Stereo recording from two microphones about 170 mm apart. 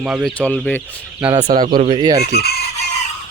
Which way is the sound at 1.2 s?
10° right (ahead or behind).